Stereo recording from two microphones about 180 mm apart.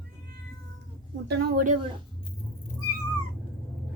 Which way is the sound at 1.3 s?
50° right (ahead or behind).